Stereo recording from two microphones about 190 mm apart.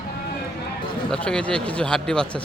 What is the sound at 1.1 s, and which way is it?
Speech, 5° left (ahead or behind).